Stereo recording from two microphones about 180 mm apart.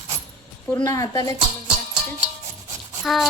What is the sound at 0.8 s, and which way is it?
Speech, 20° left (ahead or behind).